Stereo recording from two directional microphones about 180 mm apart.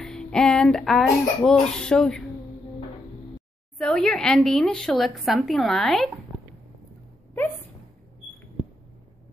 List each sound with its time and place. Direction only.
0.0 s speech: 5° left (ahead or behind)
3.7 s a woman's voice: 5° left (ahead or behind)